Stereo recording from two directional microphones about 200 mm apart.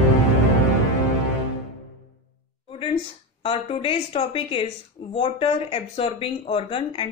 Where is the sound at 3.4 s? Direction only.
25° left (ahead or behind).